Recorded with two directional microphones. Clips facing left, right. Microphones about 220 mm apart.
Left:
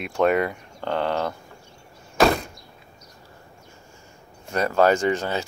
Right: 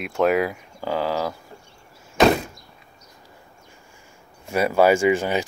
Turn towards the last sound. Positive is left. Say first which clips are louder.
# right 3 dB
turn(degrees=-10)  # may be behind; listen again after turning